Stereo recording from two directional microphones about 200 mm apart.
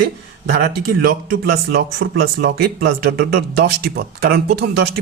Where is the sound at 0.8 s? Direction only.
50° right (ahead or behind).